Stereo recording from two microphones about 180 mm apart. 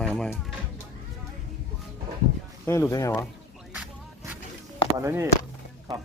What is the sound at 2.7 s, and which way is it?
Speech, 15° left (ahead or behind).